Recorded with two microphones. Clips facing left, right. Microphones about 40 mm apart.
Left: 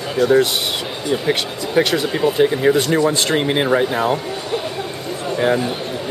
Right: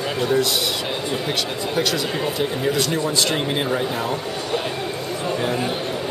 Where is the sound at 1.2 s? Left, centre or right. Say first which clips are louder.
Left 4 dB; left.